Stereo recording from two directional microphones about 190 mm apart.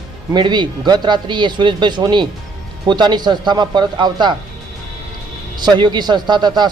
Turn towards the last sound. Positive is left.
turn(degrees=-25)  # may be behind; listen again after turning